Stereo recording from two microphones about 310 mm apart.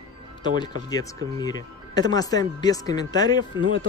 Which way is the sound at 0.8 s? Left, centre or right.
Centre.